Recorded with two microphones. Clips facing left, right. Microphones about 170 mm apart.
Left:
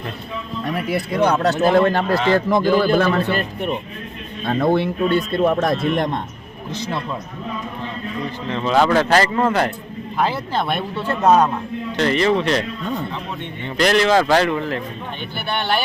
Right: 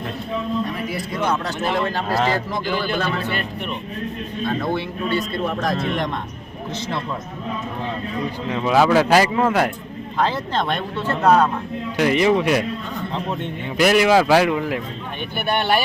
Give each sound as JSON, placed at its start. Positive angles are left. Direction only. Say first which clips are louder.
{"t": 0.9, "sound": "speech", "louder": "left 5 dB", "side_deg": 65}
{"t": 1.5, "sound": "a man's voice", "louder": "left 8 dB", "side_deg": 40}
{"t": 1.8, "sound": "speech", "louder": "left 6 dB", "side_deg": 55}
{"t": 2.5, "sound": "a man's voice", "louder": "left 8 dB", "side_deg": 45}
{"t": 4.4, "sound": "speech", "louder": "left 6 dB", "side_deg": 55}
{"t": 8.4, "sound": "speech", "louder": "even", "side_deg": -10}
{"t": 10.2, "sound": "speech", "louder": "even", "side_deg": 10}
{"t": 11.9, "sound": "speech", "louder": "right 1 dB", "side_deg": -10}
{"t": 13.7, "sound": "speech", "louder": "right 1 dB", "side_deg": -10}